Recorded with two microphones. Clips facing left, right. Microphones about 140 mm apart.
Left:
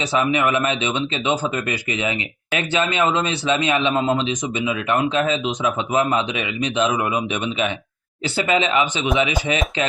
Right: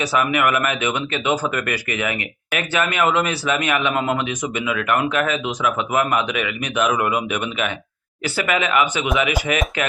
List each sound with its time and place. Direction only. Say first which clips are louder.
0.0 s speech: even; 25° left (ahead or behind)